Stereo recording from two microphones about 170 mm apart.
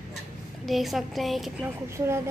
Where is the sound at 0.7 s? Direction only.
Centre (ahead or behind).